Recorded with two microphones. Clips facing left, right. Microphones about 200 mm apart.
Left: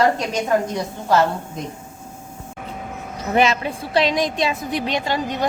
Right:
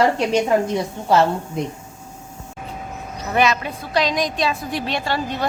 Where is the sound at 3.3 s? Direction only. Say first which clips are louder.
Left 1 dB; 25° left (ahead or behind).